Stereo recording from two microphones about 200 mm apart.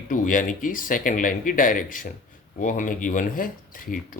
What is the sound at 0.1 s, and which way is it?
Speech, 40° left (ahead or behind).